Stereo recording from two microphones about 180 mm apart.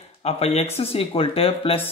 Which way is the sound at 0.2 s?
35° left (ahead or behind).